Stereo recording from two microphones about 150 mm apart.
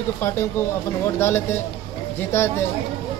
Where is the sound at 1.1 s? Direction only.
15° left (ahead or behind).